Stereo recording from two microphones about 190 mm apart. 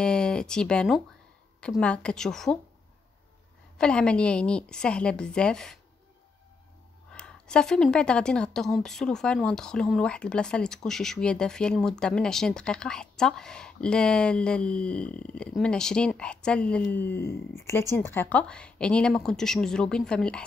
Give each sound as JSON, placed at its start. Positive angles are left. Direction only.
{"t": 0.0, "sound": "a woman's voice", "side_deg": 5}
{"t": 3.7, "sound": "a woman's voice", "side_deg": 5}
{"t": 7.1, "sound": "a woman's voice", "side_deg": 5}